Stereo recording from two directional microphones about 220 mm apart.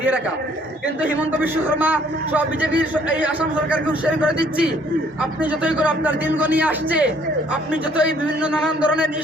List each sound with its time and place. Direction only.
1.2 s a man's voice: 10° right (ahead or behind)